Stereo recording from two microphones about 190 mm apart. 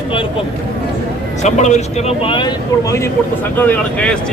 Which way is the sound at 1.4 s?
35° left (ahead or behind).